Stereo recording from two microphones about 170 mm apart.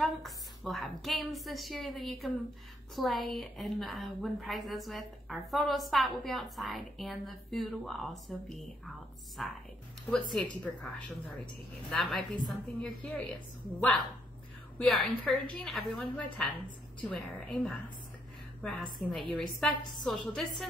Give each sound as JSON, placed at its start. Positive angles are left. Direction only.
{"t": 0.0, "sound": "a woman's voice", "side_deg": 0}
{"t": 11.9, "sound": "a woman's voice", "side_deg": 5}
{"t": 14.8, "sound": "a woman's voice", "side_deg": 0}